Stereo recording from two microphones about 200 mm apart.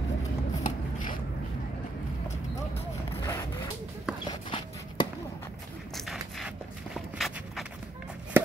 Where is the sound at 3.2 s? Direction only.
15° left (ahead or behind).